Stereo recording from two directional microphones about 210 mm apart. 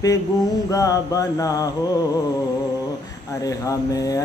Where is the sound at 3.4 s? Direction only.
15° left (ahead or behind).